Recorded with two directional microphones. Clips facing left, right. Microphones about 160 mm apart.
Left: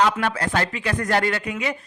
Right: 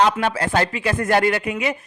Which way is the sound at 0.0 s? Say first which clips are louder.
Right 2 dB; 25° right (ahead or behind).